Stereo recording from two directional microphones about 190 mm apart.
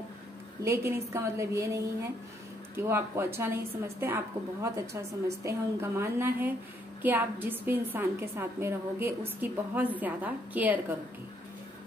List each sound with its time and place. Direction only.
0.6 s a woman's voice: 15° right (ahead or behind)